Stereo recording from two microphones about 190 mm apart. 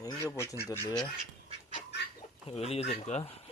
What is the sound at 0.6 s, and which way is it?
Speech, 20° left (ahead or behind).